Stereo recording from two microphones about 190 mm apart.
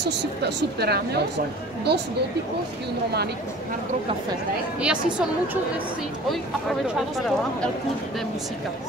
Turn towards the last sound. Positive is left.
turn(degrees=0)  # may be behind; listen again after turning